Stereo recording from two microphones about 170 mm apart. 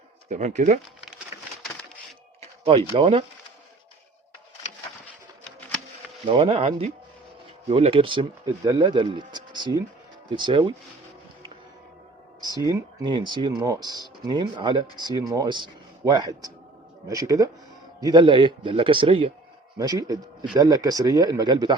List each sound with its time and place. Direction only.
0.3 s speech: 45° right (ahead or behind)
2.9 s speech: 35° right (ahead or behind)
5.5 s a sound: 10° left (ahead or behind)
6.2 s speech: 35° right (ahead or behind)
12.5 s speech: 20° right (ahead or behind)